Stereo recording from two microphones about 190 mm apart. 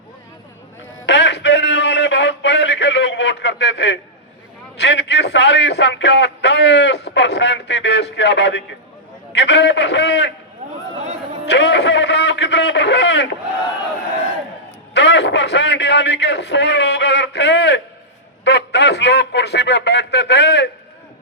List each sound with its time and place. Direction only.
1.0 s a sound: 65° left (ahead or behind)
4.8 s a man's voice: 65° left (ahead or behind)
11.4 s a man's voice: 65° left (ahead or behind)
14.9 s a man's voice: 65° left (ahead or behind)